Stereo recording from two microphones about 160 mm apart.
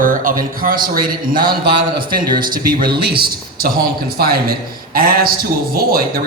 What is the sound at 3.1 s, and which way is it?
A man's voice, 75° right (ahead or behind).